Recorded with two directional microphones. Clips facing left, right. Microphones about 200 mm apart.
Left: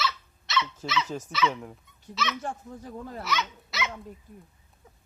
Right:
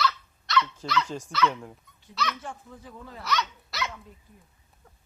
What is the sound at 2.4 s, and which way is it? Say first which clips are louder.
Speech: left 5 dB; 45° left (ahead or behind).